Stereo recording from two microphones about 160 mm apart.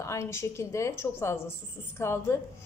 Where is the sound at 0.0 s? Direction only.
20° left (ahead or behind).